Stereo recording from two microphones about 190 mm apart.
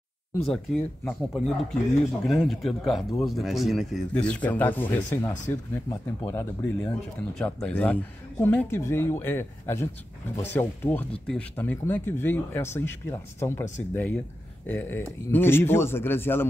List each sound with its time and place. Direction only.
0.5 s speech: centre (ahead or behind)